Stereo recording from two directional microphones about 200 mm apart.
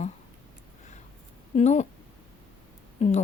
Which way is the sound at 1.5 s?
35° left (ahead or behind).